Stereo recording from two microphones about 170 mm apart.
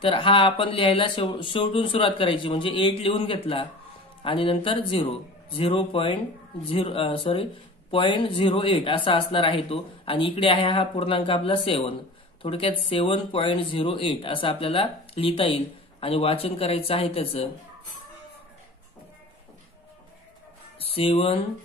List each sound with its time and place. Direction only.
0.0 s speech: 30° left (ahead or behind)
20.8 s speech: 35° left (ahead or behind)